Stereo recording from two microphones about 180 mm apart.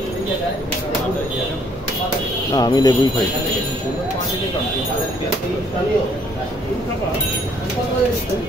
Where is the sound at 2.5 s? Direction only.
20° left (ahead or behind).